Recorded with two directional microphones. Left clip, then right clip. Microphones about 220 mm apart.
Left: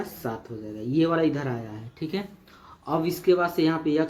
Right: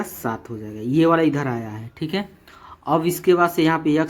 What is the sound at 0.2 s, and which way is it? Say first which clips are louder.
A man's voice: right 7 dB; 40° right (ahead or behind).